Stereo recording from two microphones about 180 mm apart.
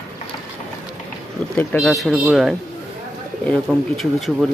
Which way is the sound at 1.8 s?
Centre (ahead or behind).